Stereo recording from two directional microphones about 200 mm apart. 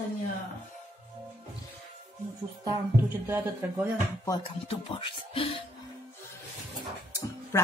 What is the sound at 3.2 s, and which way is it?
Speech, 10° right (ahead or behind).